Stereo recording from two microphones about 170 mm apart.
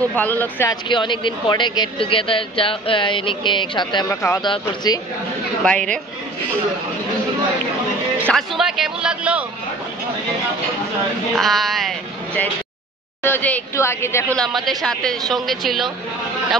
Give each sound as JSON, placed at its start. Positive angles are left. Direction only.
{"t": 0.1, "sound": "a woman's voice", "side_deg": 10}
{"t": 0.8, "sound": "speech", "side_deg": 30}
{"t": 4.1, "sound": "a woman's voice", "side_deg": 15}
{"t": 5.6, "sound": "speech", "side_deg": 5}
{"t": 8.3, "sound": "speech", "side_deg": 0}
{"t": 11.3, "sound": "speech", "side_deg": 0}
{"t": 13.2, "sound": "a woman's voice", "side_deg": 10}
{"t": 14.4, "sound": "speech", "side_deg": 0}